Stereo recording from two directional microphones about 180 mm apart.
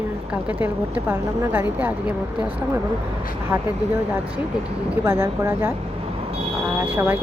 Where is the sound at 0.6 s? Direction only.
10° right (ahead or behind).